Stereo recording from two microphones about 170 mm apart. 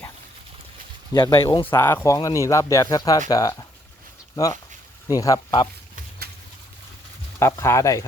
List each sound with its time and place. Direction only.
1.1 s speech: 30° left (ahead or behind)
1.7 s speech: 15° left (ahead or behind)
5.0 s speech: 20° left (ahead or behind)
7.3 s speech: 15° left (ahead or behind)